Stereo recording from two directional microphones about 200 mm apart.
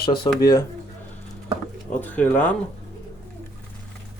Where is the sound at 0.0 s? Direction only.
20° left (ahead or behind).